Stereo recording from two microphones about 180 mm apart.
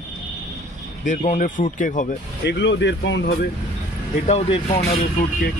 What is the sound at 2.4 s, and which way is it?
Speech, 70° left (ahead or behind).